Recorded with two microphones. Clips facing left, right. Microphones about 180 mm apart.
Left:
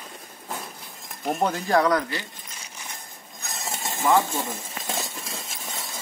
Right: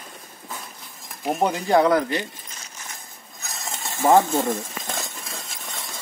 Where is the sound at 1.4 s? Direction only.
15° right (ahead or behind).